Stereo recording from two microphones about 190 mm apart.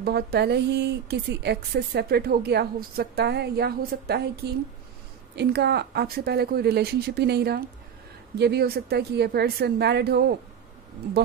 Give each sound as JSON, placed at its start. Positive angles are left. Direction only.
{"t": 0.0, "sound": "a woman's voice", "side_deg": -55}